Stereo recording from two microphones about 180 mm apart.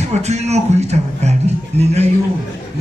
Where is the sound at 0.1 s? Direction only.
40° right (ahead or behind).